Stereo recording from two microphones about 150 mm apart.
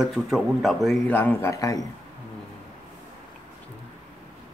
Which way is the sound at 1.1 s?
15° left (ahead or behind).